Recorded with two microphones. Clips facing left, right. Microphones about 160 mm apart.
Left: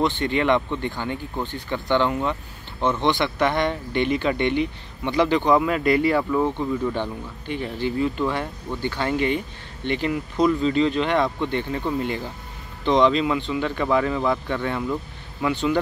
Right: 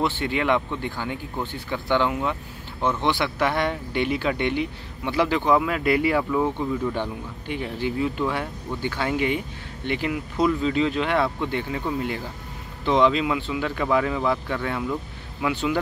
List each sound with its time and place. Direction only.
0.0 s speech: 5° right (ahead or behind)